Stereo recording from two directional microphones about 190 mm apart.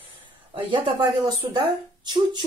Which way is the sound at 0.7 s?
25° right (ahead or behind).